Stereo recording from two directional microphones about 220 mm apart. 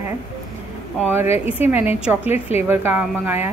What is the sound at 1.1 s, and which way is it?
A woman's voice, 10° right (ahead or behind).